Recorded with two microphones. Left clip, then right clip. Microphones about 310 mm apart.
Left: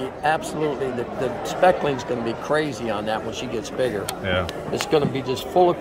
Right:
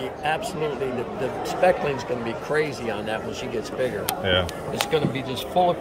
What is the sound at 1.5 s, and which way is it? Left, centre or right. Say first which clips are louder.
Speech: left 2 dB; left.